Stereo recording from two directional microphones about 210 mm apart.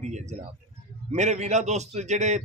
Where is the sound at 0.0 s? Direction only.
35° right (ahead or behind).